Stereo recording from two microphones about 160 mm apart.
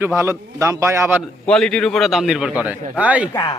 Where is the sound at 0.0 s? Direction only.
15° right (ahead or behind).